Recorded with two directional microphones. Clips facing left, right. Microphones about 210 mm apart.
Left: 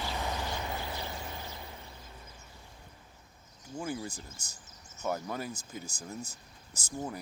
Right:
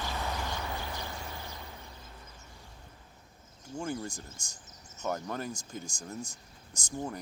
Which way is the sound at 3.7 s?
5° left (ahead or behind).